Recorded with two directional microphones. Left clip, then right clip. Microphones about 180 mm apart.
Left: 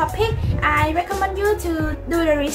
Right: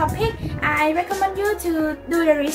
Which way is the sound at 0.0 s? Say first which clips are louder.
Left 1 dB; 15° left (ahead or behind).